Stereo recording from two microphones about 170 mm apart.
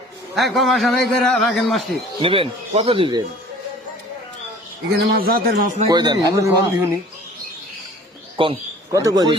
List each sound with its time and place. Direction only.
0.3 s a man's voice: centre (ahead or behind)
2.2 s speech: 30° right (ahead or behind)
4.9 s a man's voice: 75° right (ahead or behind)
5.9 s a man's voice: 25° right (ahead or behind)
8.4 s speech: 30° right (ahead or behind)
8.9 s a man's voice: 20° right (ahead or behind)